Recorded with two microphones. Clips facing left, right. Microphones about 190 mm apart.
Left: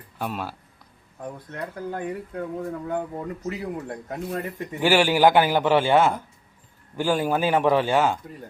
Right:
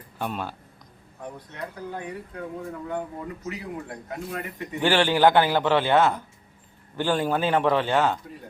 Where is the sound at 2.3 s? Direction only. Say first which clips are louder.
Left 4 dB; 40° left (ahead or behind).